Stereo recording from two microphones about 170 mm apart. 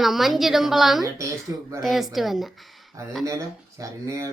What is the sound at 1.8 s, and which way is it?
Speech, centre (ahead or behind).